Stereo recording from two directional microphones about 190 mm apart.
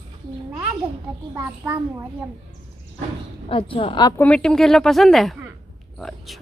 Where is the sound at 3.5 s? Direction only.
30° left (ahead or behind).